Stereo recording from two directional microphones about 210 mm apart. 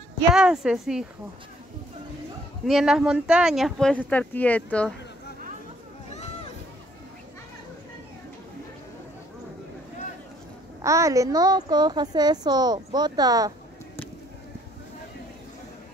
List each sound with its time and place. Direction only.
0.3 s speech: 5° right (ahead or behind)
2.6 s speech: centre (ahead or behind)
4.1 s speech: 5° left (ahead or behind)
10.8 s a child's voice: 15° right (ahead or behind)